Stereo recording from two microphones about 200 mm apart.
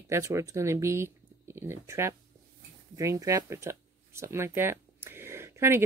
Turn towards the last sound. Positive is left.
turn(degrees=-15)  # may be behind; listen again after turning